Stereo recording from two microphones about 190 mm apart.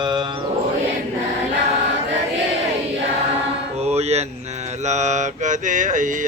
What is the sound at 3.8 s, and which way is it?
Mantra, 35° right (ahead or behind).